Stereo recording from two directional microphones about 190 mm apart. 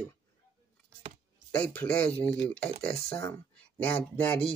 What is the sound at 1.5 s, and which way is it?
Speech, 5° left (ahead or behind).